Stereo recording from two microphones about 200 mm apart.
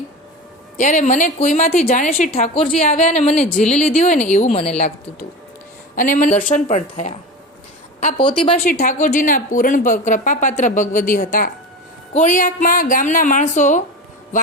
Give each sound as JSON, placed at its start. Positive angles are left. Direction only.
{"t": 0.8, "sound": "a woman's voice", "side_deg": 40}
{"t": 6.0, "sound": "a woman's voice", "side_deg": 40}
{"t": 8.2, "sound": "speech", "side_deg": 25}
{"t": 8.6, "sound": "a woman's voice", "side_deg": 40}